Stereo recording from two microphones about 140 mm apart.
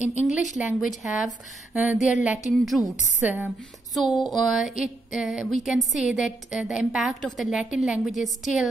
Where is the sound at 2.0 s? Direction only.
60° left (ahead or behind).